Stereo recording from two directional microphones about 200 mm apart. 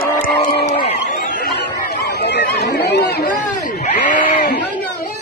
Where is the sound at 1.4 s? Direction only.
55° left (ahead or behind).